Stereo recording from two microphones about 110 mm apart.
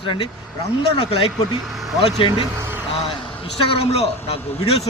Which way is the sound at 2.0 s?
60° left (ahead or behind).